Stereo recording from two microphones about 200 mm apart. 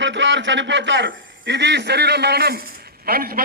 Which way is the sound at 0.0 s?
65° right (ahead or behind).